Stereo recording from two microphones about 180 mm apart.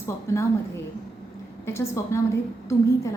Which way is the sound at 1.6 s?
15° left (ahead or behind).